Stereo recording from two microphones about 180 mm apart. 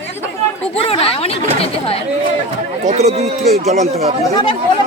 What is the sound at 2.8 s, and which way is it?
Speech, 40° right (ahead or behind).